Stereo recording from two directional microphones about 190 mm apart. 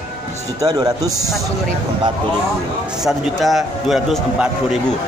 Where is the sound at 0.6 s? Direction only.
20° right (ahead or behind).